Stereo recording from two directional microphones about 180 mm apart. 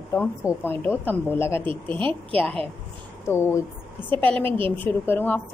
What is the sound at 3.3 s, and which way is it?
A woman's voice, 15° left (ahead or behind).